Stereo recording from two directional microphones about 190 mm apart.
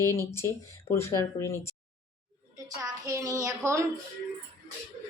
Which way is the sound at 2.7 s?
20° right (ahead or behind).